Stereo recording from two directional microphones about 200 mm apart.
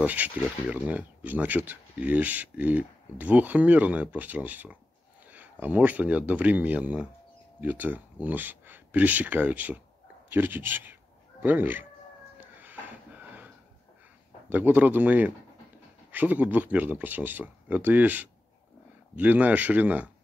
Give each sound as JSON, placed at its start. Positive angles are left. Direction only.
{"t": 0.0, "sound": "speech", "side_deg": -10}
{"t": 12.4, "sound": "music", "side_deg": -10}
{"t": 14.5, "sound": "speech", "side_deg": -10}